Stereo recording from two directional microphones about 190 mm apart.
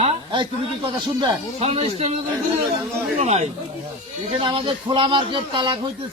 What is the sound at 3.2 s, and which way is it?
Speech, 35° right (ahead or behind).